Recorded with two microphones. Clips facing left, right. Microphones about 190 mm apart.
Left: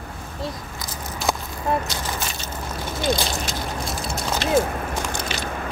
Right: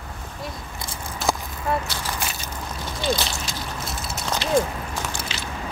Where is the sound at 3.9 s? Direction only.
Centre (ahead or behind).